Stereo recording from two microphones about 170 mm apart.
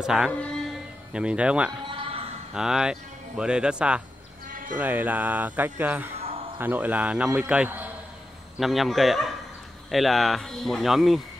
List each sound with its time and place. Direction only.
0.0 s speech: 5° right (ahead or behind)
0.4 s a sound: 5° left (ahead or behind)
1.1 s speech: 5° right (ahead or behind)
1.9 s a sound: 30° right (ahead or behind)
2.5 s speech: 5° right (ahead or behind)
4.5 s sheep: 55° right (ahead or behind)
4.7 s speech: 10° right (ahead or behind)
6.1 s a sound: 35° right (ahead or behind)
6.6 s speech: 10° right (ahead or behind)